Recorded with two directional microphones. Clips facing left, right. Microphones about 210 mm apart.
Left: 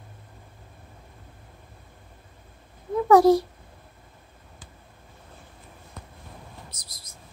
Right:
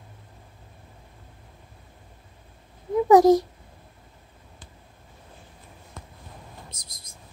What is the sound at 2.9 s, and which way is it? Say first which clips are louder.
Speech: right 1 dB; 20° right (ahead or behind).